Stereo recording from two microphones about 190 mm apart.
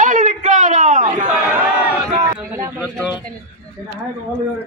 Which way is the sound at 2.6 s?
15° right (ahead or behind).